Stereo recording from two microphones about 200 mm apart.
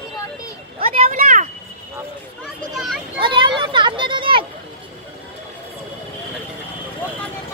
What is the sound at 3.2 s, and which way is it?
Speech, 25° right (ahead or behind).